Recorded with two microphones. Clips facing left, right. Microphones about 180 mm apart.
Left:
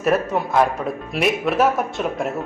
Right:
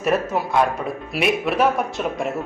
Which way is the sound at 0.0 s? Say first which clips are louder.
Left 1 dB; centre (ahead or behind).